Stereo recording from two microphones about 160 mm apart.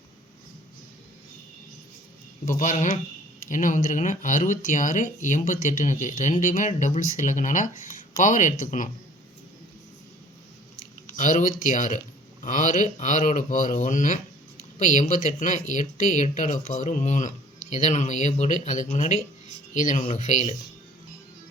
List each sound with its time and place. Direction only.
2.5 s speech: 50° left (ahead or behind)
11.2 s speech: 55° left (ahead or behind)
19.7 s speech: 55° left (ahead or behind)